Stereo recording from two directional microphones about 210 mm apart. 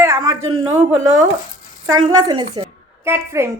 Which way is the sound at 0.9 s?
65° right (ahead or behind).